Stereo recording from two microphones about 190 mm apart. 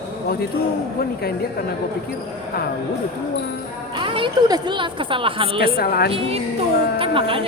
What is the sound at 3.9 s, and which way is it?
Speech, 25° right (ahead or behind).